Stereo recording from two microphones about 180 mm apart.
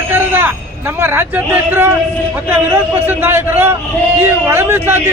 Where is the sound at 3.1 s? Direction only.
15° right (ahead or behind).